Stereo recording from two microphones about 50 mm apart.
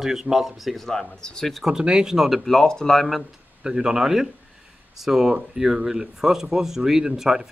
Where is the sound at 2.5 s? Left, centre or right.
Centre.